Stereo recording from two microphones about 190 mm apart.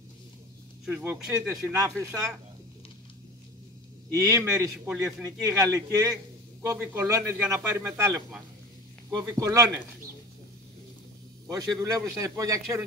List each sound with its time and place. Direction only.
0.8 s a man's voice: 10° right (ahead or behind)
4.1 s a man's voice: 15° right (ahead or behind)
11.5 s a man's voice: 15° right (ahead or behind)